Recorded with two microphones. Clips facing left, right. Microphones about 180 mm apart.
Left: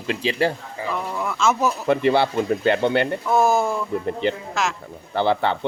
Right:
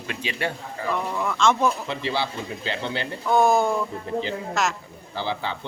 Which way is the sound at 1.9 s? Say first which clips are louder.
Left 9 dB; 55° left (ahead or behind).